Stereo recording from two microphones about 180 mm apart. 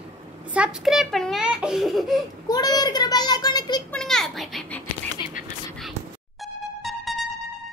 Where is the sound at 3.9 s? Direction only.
5° left (ahead or behind).